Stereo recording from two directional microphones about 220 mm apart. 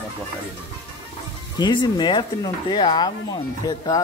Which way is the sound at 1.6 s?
20° left (ahead or behind).